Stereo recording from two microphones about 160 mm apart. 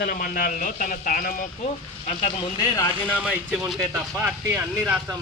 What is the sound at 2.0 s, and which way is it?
Speech, 45° left (ahead or behind).